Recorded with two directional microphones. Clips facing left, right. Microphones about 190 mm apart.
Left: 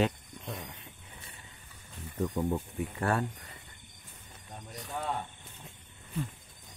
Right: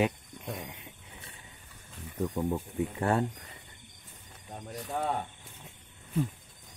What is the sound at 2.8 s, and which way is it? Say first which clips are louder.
Speech: right 4 dB; 20° right (ahead or behind).